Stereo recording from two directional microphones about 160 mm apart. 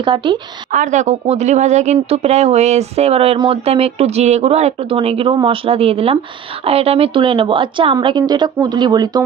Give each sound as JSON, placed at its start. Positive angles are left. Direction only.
{"t": 0.0, "sound": "speech", "side_deg": -30}
{"t": 0.7, "sound": "speech", "side_deg": -50}